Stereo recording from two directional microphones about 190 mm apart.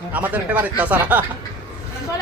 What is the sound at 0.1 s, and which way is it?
Speech, 10° right (ahead or behind).